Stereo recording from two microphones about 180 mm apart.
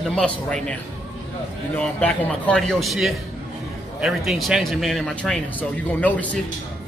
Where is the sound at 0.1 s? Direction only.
5° left (ahead or behind).